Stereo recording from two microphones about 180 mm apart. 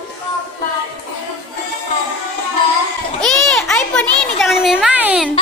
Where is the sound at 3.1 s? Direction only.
Centre (ahead or behind).